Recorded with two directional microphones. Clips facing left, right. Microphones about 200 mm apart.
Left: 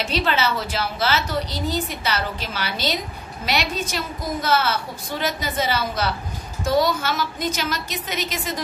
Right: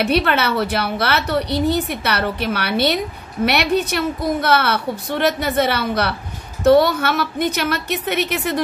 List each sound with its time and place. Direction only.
0.0 s a woman's voice: 60° right (ahead or behind)